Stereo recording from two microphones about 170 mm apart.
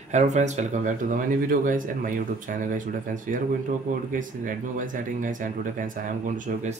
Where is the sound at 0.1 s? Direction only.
45° right (ahead or behind).